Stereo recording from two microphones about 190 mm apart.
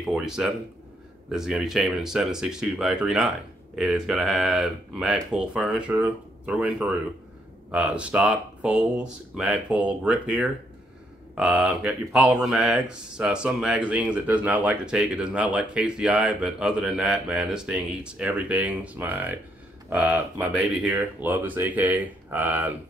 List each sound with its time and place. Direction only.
0.0 s speech: 5° right (ahead or behind)